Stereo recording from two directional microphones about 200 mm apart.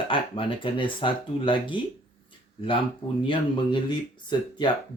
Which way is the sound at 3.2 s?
25° left (ahead or behind).